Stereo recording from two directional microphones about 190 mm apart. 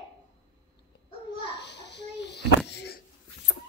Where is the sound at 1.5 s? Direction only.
65° left (ahead or behind).